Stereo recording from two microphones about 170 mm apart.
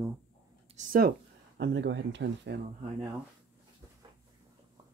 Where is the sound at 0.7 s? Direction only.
35° right (ahead or behind).